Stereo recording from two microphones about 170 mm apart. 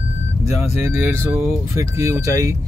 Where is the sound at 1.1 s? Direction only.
10° right (ahead or behind).